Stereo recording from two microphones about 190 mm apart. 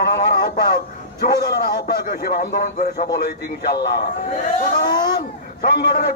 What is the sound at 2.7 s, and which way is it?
Speech, 45° left (ahead or behind).